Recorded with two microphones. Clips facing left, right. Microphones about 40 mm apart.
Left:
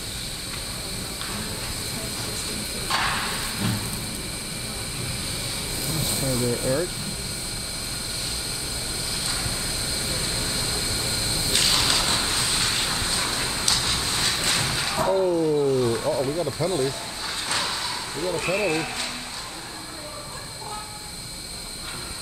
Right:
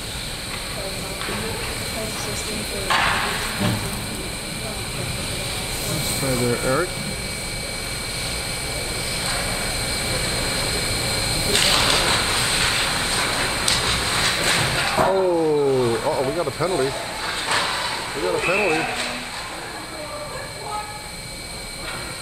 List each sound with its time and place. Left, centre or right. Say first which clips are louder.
2.9 s a sound: right 5 dB; right
6.2 s speech: right 4 dB; right
9.2 s vehicle: right 6 dB; right